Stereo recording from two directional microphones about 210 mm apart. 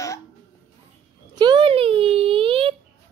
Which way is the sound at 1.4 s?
20° right (ahead or behind).